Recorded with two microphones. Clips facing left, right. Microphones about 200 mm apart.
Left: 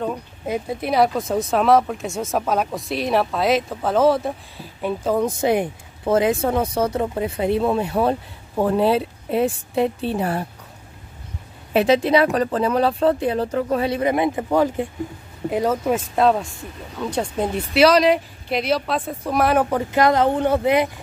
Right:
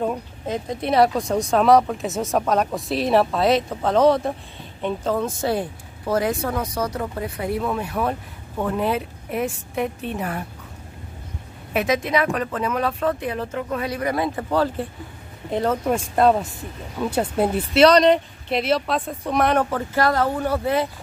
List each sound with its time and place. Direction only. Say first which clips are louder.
0.5 s speech: left 1 dB; 5° left (ahead or behind); by 10.4 s 30° left (ahead or behind)
11.7 s speech: left 5 dB; 30° left (ahead or behind); by 19.8 s 5° left (ahead or behind)
19.8 s speech: left 3 dB; 20° left (ahead or behind)